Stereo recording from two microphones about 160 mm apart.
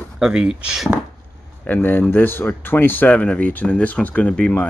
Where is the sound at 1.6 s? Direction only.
10° left (ahead or behind).